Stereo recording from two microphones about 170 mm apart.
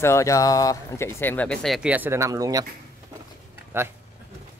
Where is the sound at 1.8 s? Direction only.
10° right (ahead or behind).